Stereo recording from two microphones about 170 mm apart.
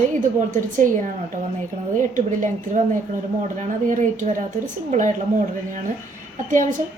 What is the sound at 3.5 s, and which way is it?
Speech, 45° right (ahead or behind).